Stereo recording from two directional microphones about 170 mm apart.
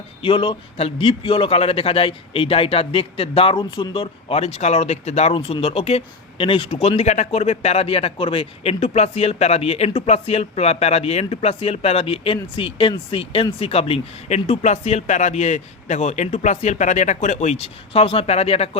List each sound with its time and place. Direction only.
0.2 s a man's voice: 30° left (ahead or behind)